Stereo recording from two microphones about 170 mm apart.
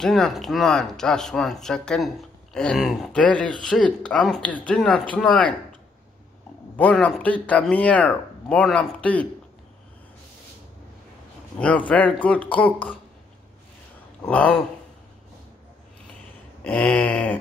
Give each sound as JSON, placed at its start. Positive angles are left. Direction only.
{"t": 0.0, "sound": "speech", "side_deg": 0}
{"t": 6.8, "sound": "speech", "side_deg": 5}
{"t": 11.9, "sound": "speech", "side_deg": 10}
{"t": 14.2, "sound": "speech", "side_deg": 10}
{"t": 16.6, "sound": "speech", "side_deg": 5}